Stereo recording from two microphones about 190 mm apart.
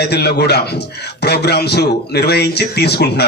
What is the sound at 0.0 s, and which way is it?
A man's voice, 60° left (ahead or behind).